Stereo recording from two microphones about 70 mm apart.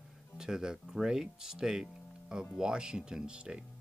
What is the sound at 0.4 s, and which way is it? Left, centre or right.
Speech, centre.